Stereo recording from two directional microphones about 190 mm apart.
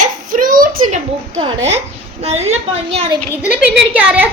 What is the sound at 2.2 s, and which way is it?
Speech, 35° right (ahead or behind).